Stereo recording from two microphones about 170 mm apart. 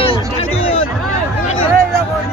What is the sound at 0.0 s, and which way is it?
Music, 35° left (ahead or behind).